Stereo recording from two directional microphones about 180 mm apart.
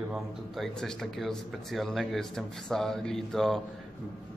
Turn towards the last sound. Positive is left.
turn(degrees=0)  # may be behind; listen again after turning